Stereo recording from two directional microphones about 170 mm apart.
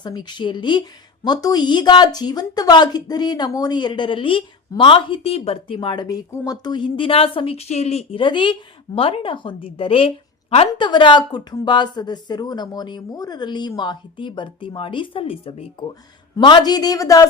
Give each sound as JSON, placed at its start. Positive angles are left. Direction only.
{"t": 0.0, "sound": "a woman's voice", "side_deg": 25}